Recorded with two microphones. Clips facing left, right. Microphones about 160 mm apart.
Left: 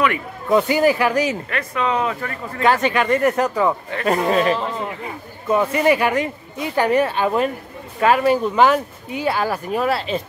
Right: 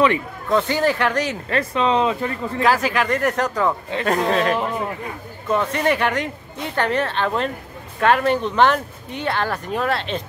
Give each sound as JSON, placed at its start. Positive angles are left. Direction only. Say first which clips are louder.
{"t": 0.5, "sound": "speech", "louder": "left 3 dB", "side_deg": 10}
{"t": 1.5, "sound": "speech", "louder": "right 3 dB", "side_deg": -30}
{"t": 2.6, "sound": "speech", "louder": "left 2 dB", "side_deg": 0}